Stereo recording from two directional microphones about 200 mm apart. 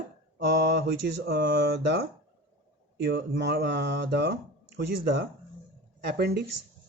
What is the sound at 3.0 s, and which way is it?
Speech, 55° right (ahead or behind).